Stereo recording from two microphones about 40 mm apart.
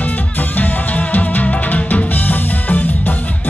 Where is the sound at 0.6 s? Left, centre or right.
Left.